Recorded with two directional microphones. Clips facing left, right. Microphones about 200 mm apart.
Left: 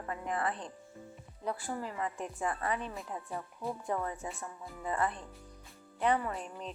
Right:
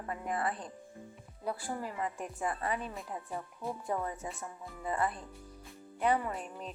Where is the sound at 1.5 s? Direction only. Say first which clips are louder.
Even; 10° right (ahead or behind).